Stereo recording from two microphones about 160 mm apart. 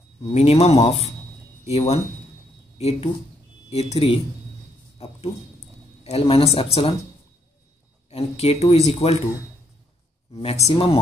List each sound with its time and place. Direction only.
0.2 s speech: 45° left (ahead or behind)
8.1 s speech: 40° left (ahead or behind)
10.3 s speech: 40° left (ahead or behind)